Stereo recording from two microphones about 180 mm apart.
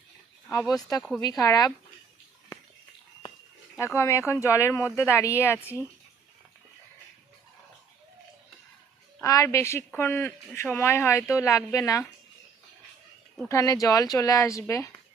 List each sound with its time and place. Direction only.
0.7 s speech: 20° left (ahead or behind)
3.9 s speech: 15° left (ahead or behind)
9.2 s speech: 15° left (ahead or behind)
13.5 s speech: 15° left (ahead or behind)